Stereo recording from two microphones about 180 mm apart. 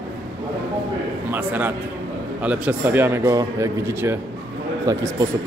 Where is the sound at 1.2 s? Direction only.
10° right (ahead or behind).